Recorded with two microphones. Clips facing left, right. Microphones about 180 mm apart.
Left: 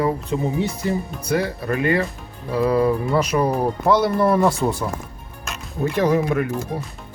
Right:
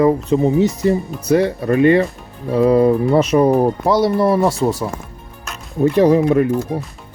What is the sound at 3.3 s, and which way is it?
Speech, 35° right (ahead or behind).